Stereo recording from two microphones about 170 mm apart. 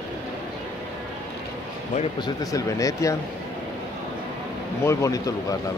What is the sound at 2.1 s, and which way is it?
Speech, 20° left (ahead or behind).